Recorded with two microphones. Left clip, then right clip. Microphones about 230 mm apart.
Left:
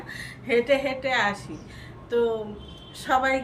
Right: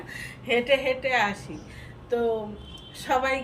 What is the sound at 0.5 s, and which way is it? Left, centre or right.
Speech, left.